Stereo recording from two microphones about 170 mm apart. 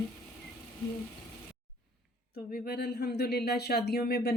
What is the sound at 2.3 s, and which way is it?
Speech, 70° left (ahead or behind).